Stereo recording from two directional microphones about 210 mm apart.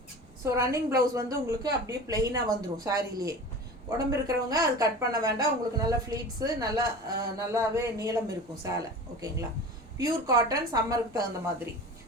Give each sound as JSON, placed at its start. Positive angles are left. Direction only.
{"t": 0.4, "sound": "a woman's voice", "side_deg": -15}